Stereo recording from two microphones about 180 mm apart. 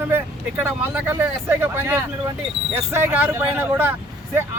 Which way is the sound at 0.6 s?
15° right (ahead or behind).